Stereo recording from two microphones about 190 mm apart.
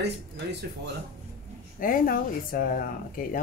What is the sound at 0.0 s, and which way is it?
Speech, 60° right (ahead or behind).